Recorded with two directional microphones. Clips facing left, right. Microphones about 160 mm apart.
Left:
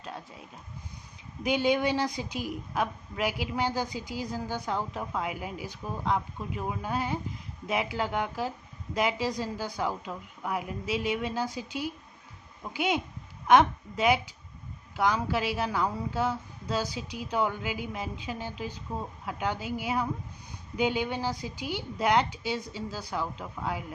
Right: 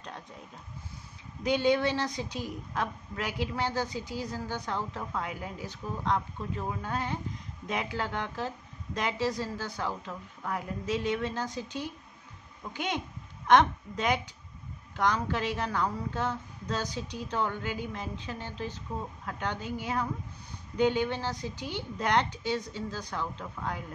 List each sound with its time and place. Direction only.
1.4 s a woman's voice: 10° left (ahead or behind)